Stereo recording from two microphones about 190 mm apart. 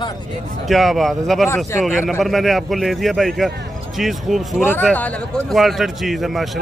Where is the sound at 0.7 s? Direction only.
Centre (ahead or behind).